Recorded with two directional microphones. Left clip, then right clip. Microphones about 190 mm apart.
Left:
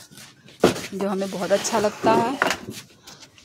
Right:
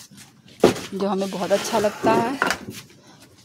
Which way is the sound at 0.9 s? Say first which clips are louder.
Right 2 dB; centre (ahead or behind).